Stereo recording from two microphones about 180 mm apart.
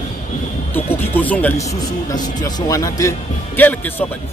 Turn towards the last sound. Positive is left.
turn(degrees=10)  # may be behind; listen again after turning